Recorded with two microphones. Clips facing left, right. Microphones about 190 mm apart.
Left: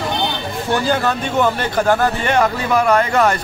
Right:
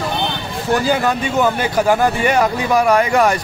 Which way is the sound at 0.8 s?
10° right (ahead or behind).